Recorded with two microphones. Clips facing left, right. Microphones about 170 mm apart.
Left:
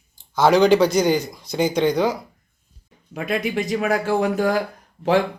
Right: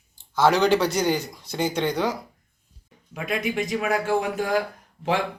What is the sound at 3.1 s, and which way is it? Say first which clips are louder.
Speech: left 3 dB; 35° left (ahead or behind).